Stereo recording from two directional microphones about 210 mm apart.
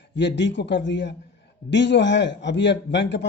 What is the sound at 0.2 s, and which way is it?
A man's voice, 55° left (ahead or behind).